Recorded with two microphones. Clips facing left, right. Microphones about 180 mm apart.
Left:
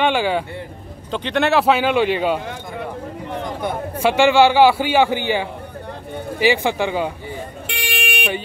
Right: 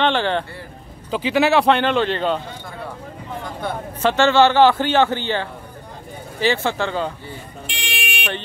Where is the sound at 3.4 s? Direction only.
15° left (ahead or behind).